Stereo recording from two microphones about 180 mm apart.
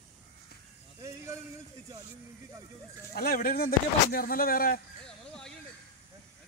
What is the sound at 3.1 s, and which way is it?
Speech, 60° left (ahead or behind).